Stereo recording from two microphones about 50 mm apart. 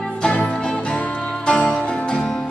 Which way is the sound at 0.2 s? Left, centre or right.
Centre.